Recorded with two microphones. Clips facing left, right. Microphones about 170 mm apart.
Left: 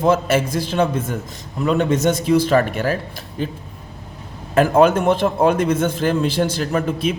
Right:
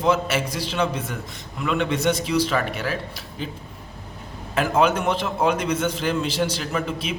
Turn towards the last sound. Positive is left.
turn(degrees=50)  # may be behind; listen again after turning